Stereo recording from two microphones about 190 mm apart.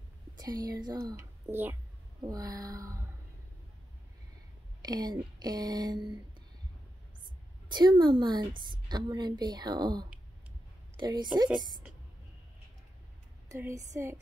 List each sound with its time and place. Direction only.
0.4 s a woman's voice: 20° right (ahead or behind)
4.8 s a woman's voice: 20° right (ahead or behind)
7.7 s a woman's voice: 25° right (ahead or behind)
13.5 s a woman's voice: 15° right (ahead or behind)